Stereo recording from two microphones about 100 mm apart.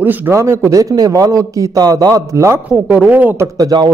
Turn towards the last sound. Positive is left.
turn(degrees=-40)  # may be behind; listen again after turning